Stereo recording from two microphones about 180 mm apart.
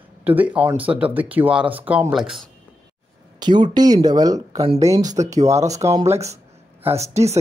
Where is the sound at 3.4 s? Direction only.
25° right (ahead or behind).